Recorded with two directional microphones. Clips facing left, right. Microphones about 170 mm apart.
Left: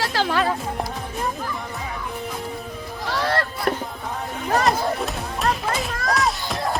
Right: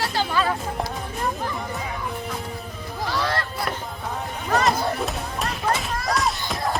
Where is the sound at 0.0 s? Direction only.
90° left.